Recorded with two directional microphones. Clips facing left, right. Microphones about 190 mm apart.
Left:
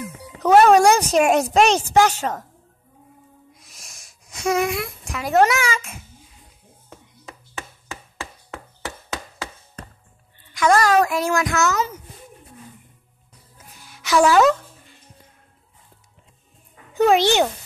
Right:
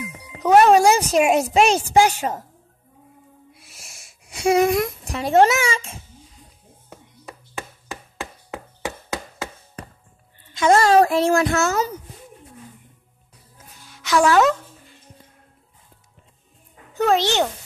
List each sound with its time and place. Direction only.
0.4 s speech: centre (ahead or behind)
3.5 s a sound: 5° right (ahead or behind)
4.4 s speech: 35° right (ahead or behind)
10.5 s speech: 25° right (ahead or behind)
13.8 s music: 5° left (ahead or behind)
16.9 s a child's voice: 15° left (ahead or behind)